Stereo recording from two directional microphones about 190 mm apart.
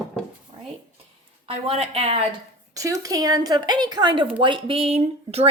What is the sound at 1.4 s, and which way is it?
Speech, 30° right (ahead or behind).